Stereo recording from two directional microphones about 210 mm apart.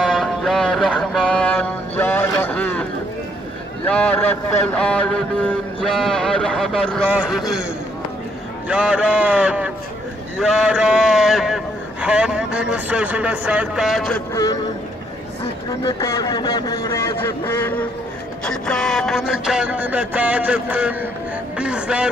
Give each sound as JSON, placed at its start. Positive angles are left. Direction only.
{"t": 0.0, "sound": "music", "side_deg": 0}
{"t": 3.8, "sound": "speech", "side_deg": 5}
{"t": 8.6, "sound": "speech", "side_deg": -5}
{"t": 14.3, "sound": "speech", "side_deg": 20}
{"t": 15.8, "sound": "speech", "side_deg": 15}
{"t": 21.5, "sound": "a sound", "side_deg": -5}